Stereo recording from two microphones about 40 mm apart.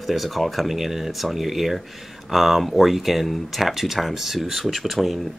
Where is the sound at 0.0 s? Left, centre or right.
Centre.